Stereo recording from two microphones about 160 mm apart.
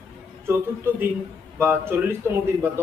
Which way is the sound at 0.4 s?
15° right (ahead or behind).